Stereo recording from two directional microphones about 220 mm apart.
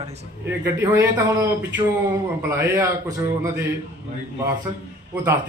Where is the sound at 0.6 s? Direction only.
10° right (ahead or behind).